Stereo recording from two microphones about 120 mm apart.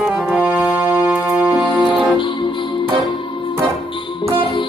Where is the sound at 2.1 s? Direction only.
45° left (ahead or behind).